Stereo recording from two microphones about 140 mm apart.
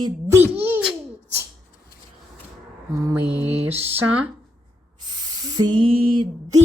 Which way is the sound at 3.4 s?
15° right (ahead or behind).